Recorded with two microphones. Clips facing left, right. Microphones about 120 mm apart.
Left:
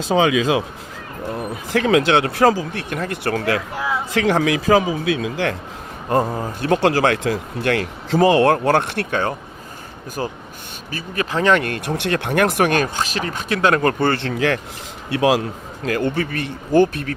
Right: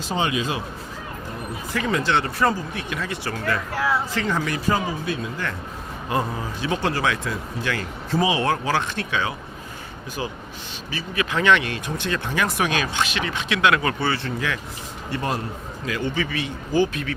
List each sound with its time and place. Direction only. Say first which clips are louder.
0.1 s speech: left 8 dB; 90° left
1.7 s speech: left 7 dB; 70° left (ahead or behind)
2.9 s speech: left 7 dB; 50° left (ahead or behind); by 5.5 s 85° left
6.1 s speech: left 6 dB; 40° left (ahead or behind)
6.6 s speech: left 8 dB; 65° left (ahead or behind); by 11.6 s 35° left (ahead or behind)
11.6 s speech: left 5 dB; 60° left (ahead or behind)
14.2 s speech: left 7 dB; 75° left (ahead or behind)
15.9 s speech: left 5 dB; 55° left (ahead or behind)